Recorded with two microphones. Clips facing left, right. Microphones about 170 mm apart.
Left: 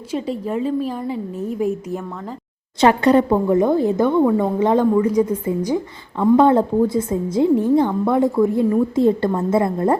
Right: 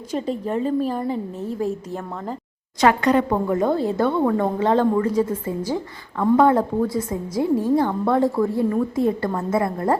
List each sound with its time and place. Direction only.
0.1 s a woman's voice: 5° left (ahead or behind)
0.6 s a woman's voice: 40° right (ahead or behind)
1.5 s a woman's voice: 15° left (ahead or behind)
2.8 s speech: 30° left (ahead or behind)
3.2 s a woman's voice: 15° left (ahead or behind)
6.4 s a woman's voice: 25° left (ahead or behind)